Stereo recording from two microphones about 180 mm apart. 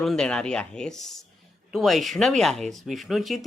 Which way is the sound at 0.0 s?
5° left (ahead or behind).